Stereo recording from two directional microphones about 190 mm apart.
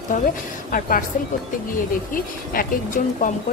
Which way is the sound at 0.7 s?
50° left (ahead or behind).